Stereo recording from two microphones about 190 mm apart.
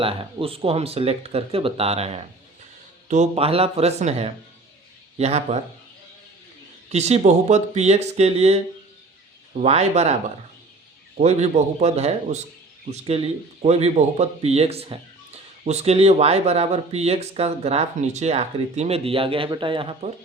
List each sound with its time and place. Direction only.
0.0 s speech: 30° right (ahead or behind)
6.9 s speech: 35° right (ahead or behind)
9.6 s speech: 35° right (ahead or behind)
11.2 s speech: 35° right (ahead or behind)